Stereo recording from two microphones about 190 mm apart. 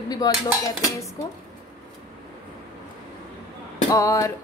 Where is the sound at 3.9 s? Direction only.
15° left (ahead or behind).